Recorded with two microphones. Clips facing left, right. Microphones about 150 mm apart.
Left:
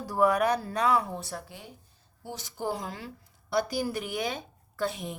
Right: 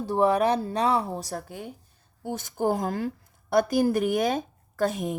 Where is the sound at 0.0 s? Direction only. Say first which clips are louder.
Right 3 dB; 25° right (ahead or behind).